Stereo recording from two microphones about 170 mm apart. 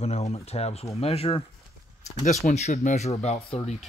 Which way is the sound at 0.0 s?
40° left (ahead or behind).